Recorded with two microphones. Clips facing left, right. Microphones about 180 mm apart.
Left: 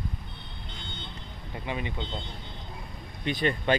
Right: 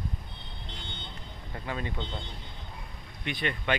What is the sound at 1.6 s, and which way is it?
Speech, 15° left (ahead or behind).